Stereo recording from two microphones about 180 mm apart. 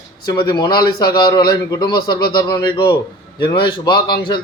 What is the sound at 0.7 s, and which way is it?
Speech, 60° left (ahead or behind).